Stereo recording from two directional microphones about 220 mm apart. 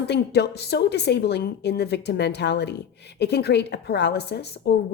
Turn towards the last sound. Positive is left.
turn(degrees=50)  # may be behind; listen again after turning